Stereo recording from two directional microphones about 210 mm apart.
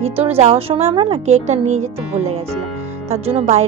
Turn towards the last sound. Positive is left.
turn(degrees=-30)  # may be behind; listen again after turning